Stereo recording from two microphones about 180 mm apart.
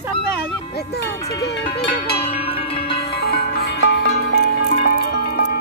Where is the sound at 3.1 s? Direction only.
60° left (ahead or behind).